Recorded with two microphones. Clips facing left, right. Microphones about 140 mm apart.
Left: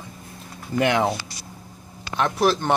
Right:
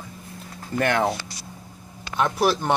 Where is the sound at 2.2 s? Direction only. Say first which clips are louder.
Left 1 dB; 10° right (ahead or behind).